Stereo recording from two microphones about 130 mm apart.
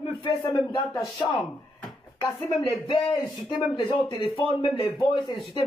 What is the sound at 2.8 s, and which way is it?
Speech, 35° left (ahead or behind).